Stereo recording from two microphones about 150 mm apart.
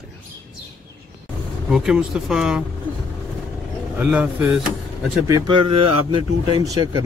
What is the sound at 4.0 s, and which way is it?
Speech, 10° right (ahead or behind).